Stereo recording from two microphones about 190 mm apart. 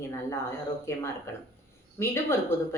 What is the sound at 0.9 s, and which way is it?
Speech, 15° left (ahead or behind).